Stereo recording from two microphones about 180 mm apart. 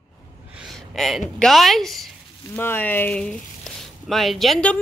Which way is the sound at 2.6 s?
10° left (ahead or behind).